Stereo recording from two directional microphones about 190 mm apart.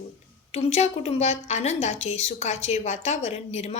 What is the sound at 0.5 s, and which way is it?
A woman's voice, 35° left (ahead or behind).